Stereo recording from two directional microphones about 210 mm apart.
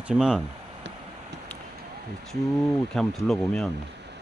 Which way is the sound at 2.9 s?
5° left (ahead or behind).